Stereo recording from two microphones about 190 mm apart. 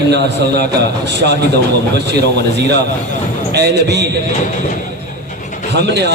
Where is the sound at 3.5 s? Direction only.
60° right (ahead or behind).